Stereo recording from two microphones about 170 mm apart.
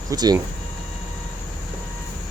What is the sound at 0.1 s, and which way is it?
Speech, 20° right (ahead or behind).